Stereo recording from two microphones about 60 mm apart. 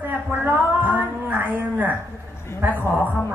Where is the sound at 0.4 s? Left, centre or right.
Right.